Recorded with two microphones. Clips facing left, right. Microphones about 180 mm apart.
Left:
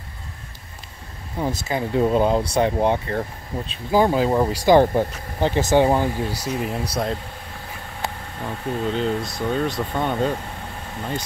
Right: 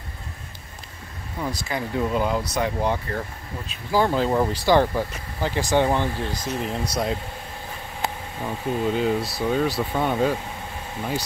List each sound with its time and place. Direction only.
1.4 s speech: 25° left (ahead or behind)
3.9 s speech: 10° left (ahead or behind)
8.4 s speech: 5° right (ahead or behind)